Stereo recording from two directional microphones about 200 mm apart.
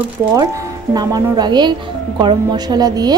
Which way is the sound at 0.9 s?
20° right (ahead or behind).